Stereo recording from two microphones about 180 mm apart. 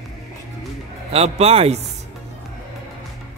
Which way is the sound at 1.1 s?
35° right (ahead or behind).